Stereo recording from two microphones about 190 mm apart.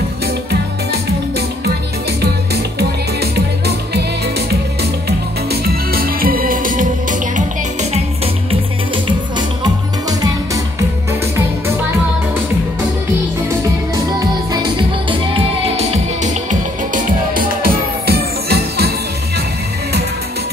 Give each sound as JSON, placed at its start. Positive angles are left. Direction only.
{"t": 2.5, "sound": "music", "side_deg": -55}
{"t": 5.5, "sound": "music", "side_deg": -50}
{"t": 14.2, "sound": "music", "side_deg": -20}
{"t": 16.4, "sound": "music", "side_deg": -45}